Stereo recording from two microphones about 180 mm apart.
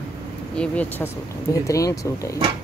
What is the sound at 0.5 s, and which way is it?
Speech, 5° left (ahead or behind).